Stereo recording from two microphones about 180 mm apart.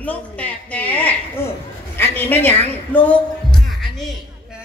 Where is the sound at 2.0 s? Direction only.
10° left (ahead or behind).